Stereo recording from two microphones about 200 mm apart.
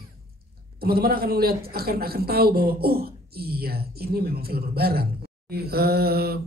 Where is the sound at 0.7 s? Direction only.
50° right (ahead or behind).